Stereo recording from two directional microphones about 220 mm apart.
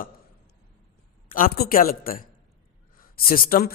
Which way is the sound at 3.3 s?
40° left (ahead or behind).